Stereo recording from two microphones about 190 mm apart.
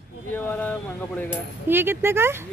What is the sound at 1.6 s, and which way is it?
Speech, 10° right (ahead or behind).